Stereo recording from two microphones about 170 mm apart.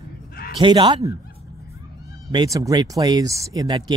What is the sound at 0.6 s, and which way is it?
Speech, 25° right (ahead or behind).